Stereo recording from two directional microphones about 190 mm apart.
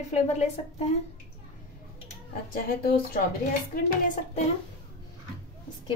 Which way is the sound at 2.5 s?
50° left (ahead or behind).